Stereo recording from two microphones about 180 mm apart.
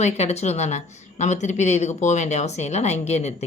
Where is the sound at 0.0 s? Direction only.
35° left (ahead or behind).